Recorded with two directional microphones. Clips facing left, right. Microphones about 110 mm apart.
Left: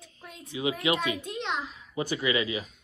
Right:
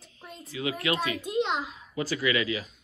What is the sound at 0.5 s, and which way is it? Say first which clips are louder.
Speech: left 1 dB; 20° left (ahead or behind).